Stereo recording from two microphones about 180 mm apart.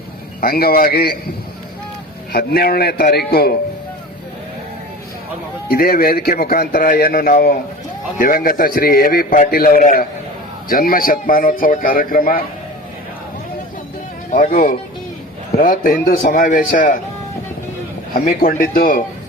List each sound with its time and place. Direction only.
0.4 s a man's voice: 55° left (ahead or behind)
2.3 s a man's voice: 55° left (ahead or behind)
5.7 s a man's voice: 55° left (ahead or behind)
14.3 s a man's voice: 50° left (ahead or behind)
18.1 s a man's voice: 55° left (ahead or behind)